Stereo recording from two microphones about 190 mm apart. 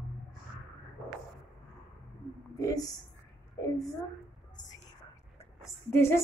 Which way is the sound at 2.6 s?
20° left (ahead or behind).